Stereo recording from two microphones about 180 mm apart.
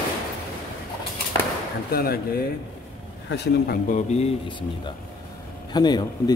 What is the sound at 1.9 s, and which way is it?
Speech, 55° left (ahead or behind).